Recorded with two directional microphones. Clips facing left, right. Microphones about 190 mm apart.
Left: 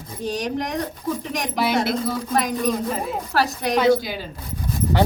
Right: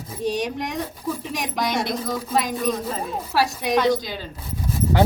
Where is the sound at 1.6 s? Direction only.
5° left (ahead or behind).